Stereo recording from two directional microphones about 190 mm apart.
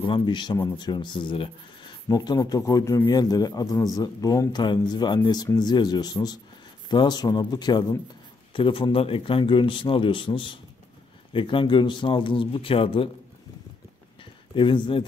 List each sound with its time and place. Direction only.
0.0 s speech: 25° left (ahead or behind)
14.5 s speech: 25° left (ahead or behind)